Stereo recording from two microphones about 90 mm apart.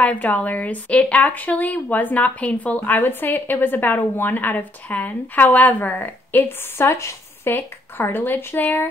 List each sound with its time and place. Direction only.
0.0 s speech: 15° left (ahead or behind)